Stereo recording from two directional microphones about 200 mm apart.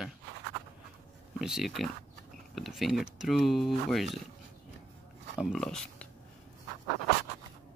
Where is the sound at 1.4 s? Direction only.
Centre (ahead or behind).